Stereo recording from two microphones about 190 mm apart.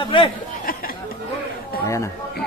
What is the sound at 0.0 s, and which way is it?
Speech, 25° left (ahead or behind).